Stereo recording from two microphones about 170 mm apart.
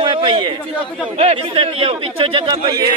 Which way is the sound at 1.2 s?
35° right (ahead or behind).